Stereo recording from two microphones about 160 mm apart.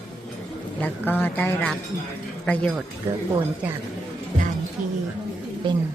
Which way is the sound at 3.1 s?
15° right (ahead or behind).